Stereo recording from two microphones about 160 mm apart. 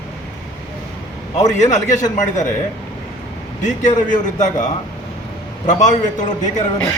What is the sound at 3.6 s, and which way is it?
A man's voice, 50° left (ahead or behind).